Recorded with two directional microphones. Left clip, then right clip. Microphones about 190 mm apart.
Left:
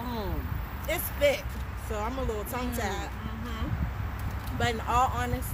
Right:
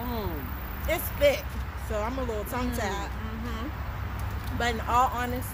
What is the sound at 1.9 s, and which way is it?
Speech, centre (ahead or behind).